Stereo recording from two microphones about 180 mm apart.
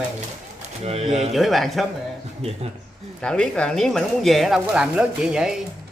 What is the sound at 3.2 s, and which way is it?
Speech, 5° left (ahead or behind).